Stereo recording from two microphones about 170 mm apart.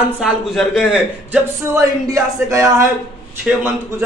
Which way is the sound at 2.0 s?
20° right (ahead or behind).